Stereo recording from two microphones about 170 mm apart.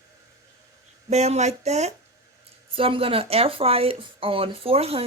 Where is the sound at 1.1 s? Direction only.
40° right (ahead or behind).